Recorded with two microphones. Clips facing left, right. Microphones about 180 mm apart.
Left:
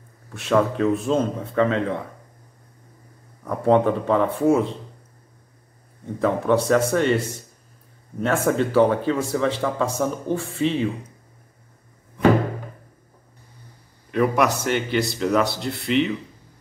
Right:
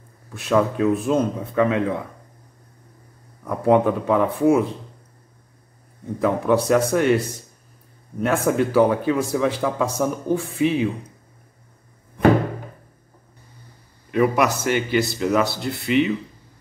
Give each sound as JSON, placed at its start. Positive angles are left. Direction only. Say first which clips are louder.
{"t": 0.4, "sound": "a man's voice", "louder": "right 1 dB", "side_deg": -5}
{"t": 3.4, "sound": "a man's voice", "louder": "right 1 dB", "side_deg": -5}
{"t": 6.2, "sound": "a man's voice", "louder": "right 1 dB", "side_deg": -10}
{"t": 14.1, "sound": "speech", "louder": "right 1 dB", "side_deg": -5}